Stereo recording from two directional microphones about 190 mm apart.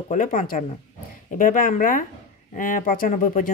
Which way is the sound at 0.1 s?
45° left (ahead or behind).